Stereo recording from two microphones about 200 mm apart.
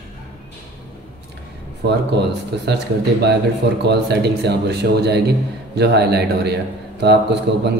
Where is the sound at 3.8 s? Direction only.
55° right (ahead or behind).